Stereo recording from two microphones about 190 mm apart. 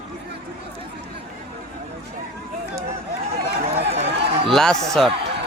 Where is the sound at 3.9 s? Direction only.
35° right (ahead or behind).